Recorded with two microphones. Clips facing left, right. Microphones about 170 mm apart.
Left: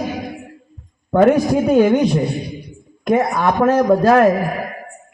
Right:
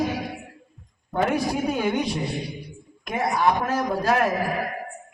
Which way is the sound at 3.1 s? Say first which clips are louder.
Left 6 dB; 50° left (ahead or behind).